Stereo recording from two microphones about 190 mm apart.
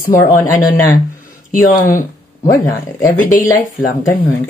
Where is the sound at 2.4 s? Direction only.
20° left (ahead or behind).